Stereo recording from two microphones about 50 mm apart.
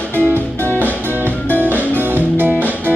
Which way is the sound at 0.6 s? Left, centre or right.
Left.